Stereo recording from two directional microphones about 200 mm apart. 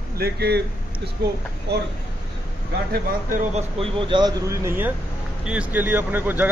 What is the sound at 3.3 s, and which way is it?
Speech, 30° right (ahead or behind).